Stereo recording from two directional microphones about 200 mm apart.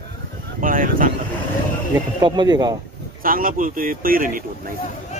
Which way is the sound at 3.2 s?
45° right (ahead or behind).